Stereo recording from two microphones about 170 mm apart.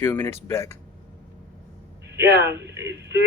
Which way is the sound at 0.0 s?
10° left (ahead or behind).